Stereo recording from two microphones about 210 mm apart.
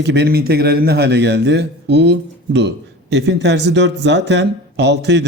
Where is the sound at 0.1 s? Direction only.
50° right (ahead or behind).